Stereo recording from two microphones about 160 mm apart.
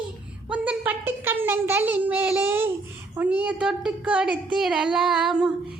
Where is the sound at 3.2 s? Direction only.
10° right (ahead or behind).